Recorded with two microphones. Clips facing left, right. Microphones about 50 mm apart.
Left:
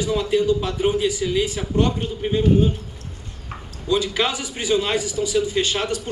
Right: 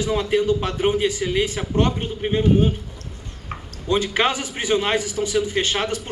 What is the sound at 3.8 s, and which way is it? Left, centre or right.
A man's voice, right.